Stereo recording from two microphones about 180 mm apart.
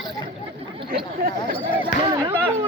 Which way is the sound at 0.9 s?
55° right (ahead or behind).